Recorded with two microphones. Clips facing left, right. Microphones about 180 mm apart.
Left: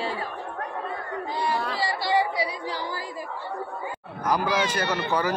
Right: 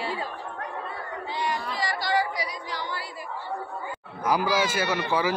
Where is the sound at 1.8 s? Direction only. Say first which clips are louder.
Left 1 dB; 30° left (ahead or behind).